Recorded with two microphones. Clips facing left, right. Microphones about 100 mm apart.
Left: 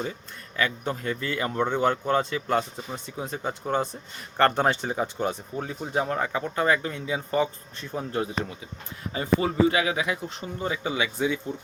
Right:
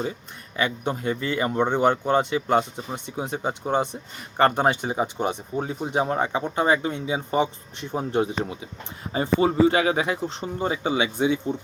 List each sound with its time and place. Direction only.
0.5 s speech: 20° right (ahead or behind)